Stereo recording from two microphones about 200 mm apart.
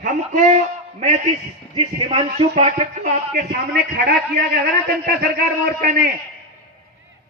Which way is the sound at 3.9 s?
50° right (ahead or behind).